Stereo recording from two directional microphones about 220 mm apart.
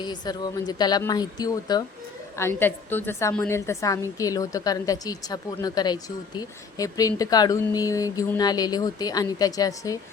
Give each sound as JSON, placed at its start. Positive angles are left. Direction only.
{"t": 0.0, "sound": "a woman's voice", "side_deg": 20}